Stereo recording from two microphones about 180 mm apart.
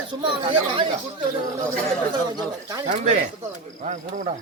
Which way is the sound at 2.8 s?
40° right (ahead or behind).